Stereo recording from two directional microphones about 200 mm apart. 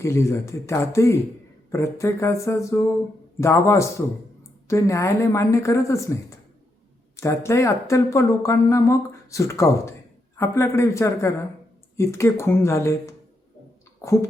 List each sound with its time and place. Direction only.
0.0 s speech: 15° left (ahead or behind)